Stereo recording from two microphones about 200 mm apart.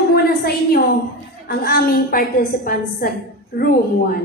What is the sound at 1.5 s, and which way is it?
A woman's voice, 50° left (ahead or behind).